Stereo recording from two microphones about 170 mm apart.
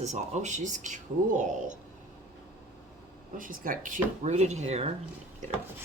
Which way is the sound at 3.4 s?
55° right (ahead or behind).